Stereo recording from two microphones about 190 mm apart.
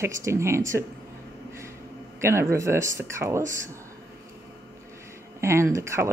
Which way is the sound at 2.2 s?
15° right (ahead or behind).